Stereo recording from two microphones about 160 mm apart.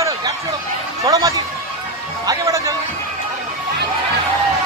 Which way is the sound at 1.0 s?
20° right (ahead or behind).